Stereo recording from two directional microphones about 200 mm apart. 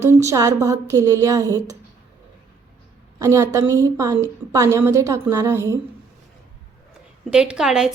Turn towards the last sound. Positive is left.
turn(degrees=0)  # may be behind; listen again after turning